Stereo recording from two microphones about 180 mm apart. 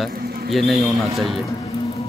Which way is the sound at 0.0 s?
Centre (ahead or behind).